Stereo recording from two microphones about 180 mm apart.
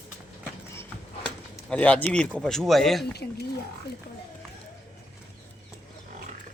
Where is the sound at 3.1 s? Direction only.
65° left (ahead or behind).